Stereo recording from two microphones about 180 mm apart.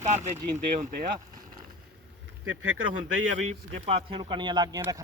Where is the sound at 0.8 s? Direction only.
45° right (ahead or behind).